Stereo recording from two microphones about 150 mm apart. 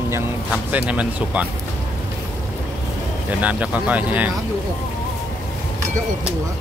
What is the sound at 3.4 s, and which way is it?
Speech, 10° right (ahead or behind).